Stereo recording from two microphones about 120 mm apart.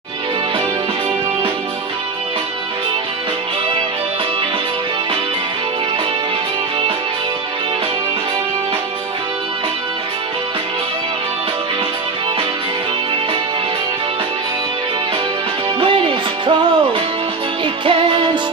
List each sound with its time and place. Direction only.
15.8 s music: 45° right (ahead or behind)